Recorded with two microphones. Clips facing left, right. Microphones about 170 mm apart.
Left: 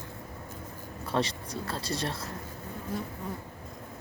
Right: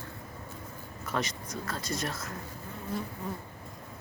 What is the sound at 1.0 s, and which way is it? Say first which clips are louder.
Speech: left 4 dB; 30° left (ahead or behind).